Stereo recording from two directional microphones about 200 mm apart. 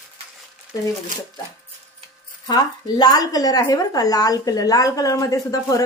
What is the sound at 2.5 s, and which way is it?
A woman's voice, 20° left (ahead or behind).